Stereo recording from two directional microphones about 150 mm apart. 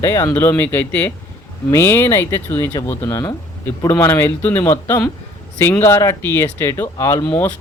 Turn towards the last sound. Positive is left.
turn(degrees=15)  # may be behind; listen again after turning